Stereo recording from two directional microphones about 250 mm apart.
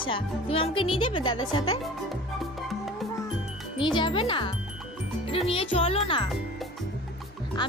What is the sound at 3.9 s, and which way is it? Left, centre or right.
Speech, centre.